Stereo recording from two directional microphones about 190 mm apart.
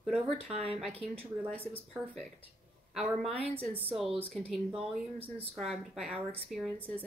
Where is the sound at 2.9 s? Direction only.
Centre (ahead or behind).